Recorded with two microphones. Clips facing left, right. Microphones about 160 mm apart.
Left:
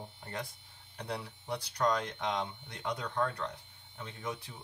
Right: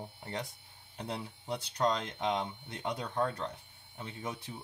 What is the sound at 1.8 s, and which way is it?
Speech, 25° right (ahead or behind).